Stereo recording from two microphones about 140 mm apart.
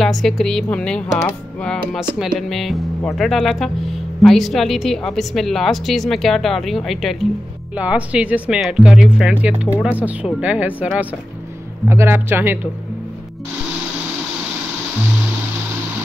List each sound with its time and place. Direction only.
0.0 s speech: centre (ahead or behind)
7.7 s speech: 10° right (ahead or behind)